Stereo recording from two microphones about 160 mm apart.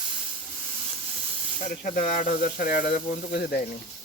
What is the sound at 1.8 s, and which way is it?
Speech, 60° left (ahead or behind).